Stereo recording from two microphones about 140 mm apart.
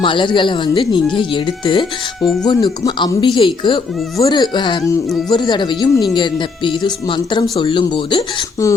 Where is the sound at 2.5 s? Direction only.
30° left (ahead or behind).